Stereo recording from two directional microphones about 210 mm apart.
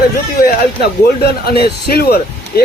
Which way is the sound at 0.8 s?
50° left (ahead or behind).